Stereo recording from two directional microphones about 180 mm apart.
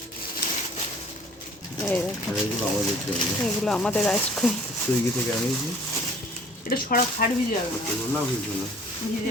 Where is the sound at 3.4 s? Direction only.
Centre (ahead or behind).